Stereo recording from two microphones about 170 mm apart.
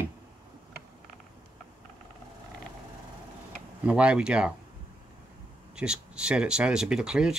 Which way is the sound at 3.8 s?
5° right (ahead or behind).